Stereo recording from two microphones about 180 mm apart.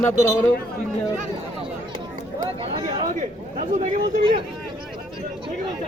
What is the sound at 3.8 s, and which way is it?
Speech, 40° right (ahead or behind).